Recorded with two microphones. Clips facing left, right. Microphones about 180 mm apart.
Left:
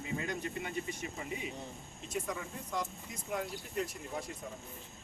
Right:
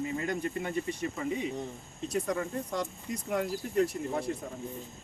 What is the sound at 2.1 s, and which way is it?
Speech, 75° right (ahead or behind).